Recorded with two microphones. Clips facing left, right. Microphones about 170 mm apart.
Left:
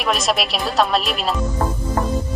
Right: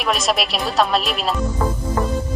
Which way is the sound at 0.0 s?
Centre (ahead or behind).